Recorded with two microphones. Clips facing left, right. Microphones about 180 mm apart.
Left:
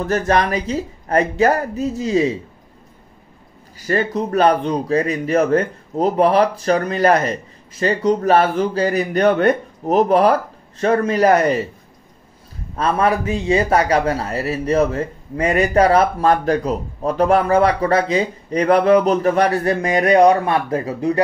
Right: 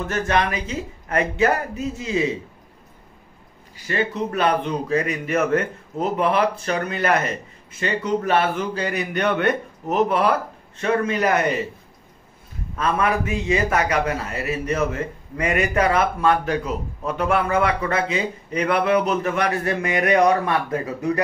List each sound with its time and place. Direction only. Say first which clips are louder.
0.0 s a man's voice: left 4 dB; 35° left (ahead or behind)
3.7 s a man's voice: left 5 dB; 40° left (ahead or behind)
12.7 s a man's voice: left 4 dB; 35° left (ahead or behind)